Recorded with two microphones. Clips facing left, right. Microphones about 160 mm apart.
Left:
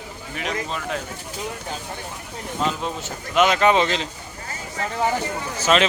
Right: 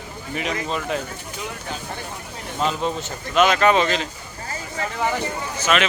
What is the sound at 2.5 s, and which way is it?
Speech, centre (ahead or behind).